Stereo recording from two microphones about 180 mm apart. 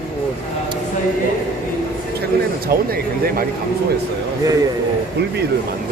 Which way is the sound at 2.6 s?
55° right (ahead or behind).